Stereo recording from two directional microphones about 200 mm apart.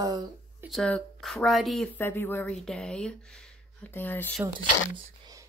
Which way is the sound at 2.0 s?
10° left (ahead or behind).